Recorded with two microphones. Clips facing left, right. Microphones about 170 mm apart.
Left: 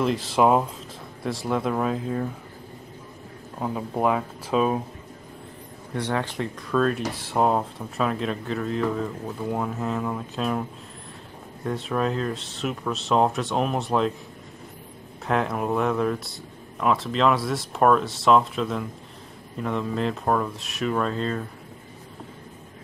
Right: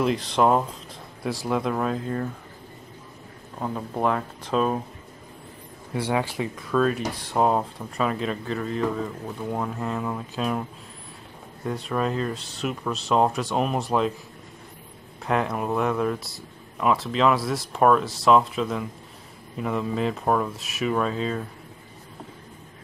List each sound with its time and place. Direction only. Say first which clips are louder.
0.0 s speech: left 1 dB; centre (ahead or behind)
3.5 s speech: left 1 dB; 5° left (ahead or behind)
5.9 s speech: right 1 dB; 10° right (ahead or behind)
11.6 s speech: left 1 dB; centre (ahead or behind)
15.2 s speech: even; centre (ahead or behind)